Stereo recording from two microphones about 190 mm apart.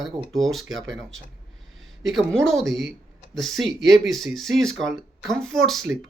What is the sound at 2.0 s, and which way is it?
Speech, centre (ahead or behind).